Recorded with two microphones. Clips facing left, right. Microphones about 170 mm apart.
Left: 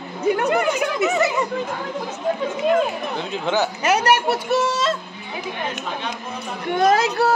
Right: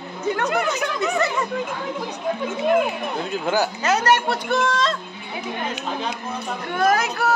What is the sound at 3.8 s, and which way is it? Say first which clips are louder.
Speech: left 2 dB; 10° left (ahead or behind).